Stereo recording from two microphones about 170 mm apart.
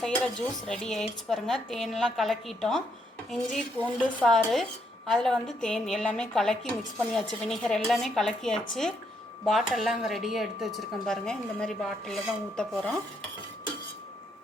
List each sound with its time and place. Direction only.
0.0 s speech: 5° left (ahead or behind)